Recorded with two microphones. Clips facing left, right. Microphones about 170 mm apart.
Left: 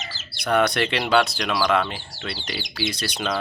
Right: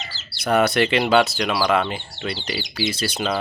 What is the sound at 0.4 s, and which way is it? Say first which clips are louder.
Speech: right 3 dB; 5° right (ahead or behind).